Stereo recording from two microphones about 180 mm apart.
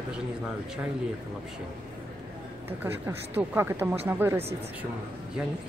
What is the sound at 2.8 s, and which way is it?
Speech, 10° right (ahead or behind).